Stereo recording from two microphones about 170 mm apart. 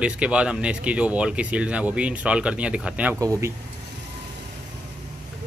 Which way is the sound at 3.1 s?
20° right (ahead or behind).